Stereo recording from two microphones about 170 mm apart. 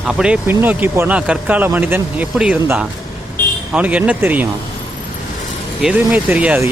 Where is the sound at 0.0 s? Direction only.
5° right (ahead or behind).